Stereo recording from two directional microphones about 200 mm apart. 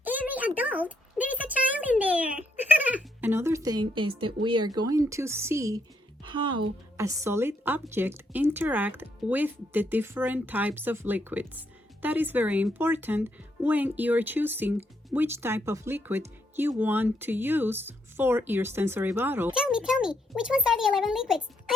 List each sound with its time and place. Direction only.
0.0 s a sound: 10° right (ahead or behind); by 4.4 s 25° right (ahead or behind)
4.4 s speech: 20° right (ahead or behind)
6.2 s music: 25° right (ahead or behind)
6.9 s speech: 15° right (ahead or behind)